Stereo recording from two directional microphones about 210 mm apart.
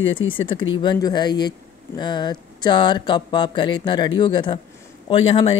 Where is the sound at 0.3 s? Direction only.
25° left (ahead or behind).